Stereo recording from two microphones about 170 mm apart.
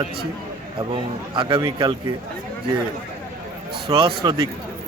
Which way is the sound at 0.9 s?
30° right (ahead or behind).